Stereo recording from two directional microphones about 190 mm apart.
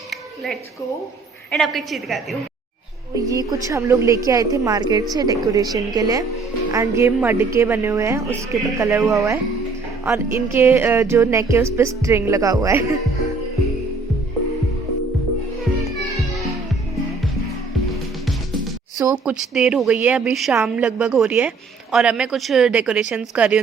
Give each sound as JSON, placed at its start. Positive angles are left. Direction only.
{"t": 1.5, "sound": "a woman's voice", "side_deg": 0}
{"t": 3.2, "sound": "a woman's voice", "side_deg": -20}
{"t": 18.9, "sound": "speech", "side_deg": -15}
{"t": 19.2, "sound": "a woman's voice", "side_deg": -5}